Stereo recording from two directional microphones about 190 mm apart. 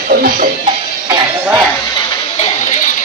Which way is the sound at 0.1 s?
50° right (ahead or behind).